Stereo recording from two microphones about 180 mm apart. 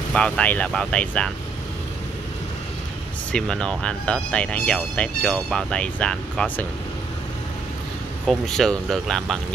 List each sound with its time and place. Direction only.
0.1 s speech: 5° left (ahead or behind)
3.3 s speech: 5° left (ahead or behind)
8.3 s speech: 5° left (ahead or behind)